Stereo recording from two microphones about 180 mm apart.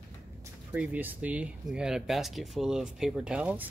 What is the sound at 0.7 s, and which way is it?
Speech, 10° right (ahead or behind).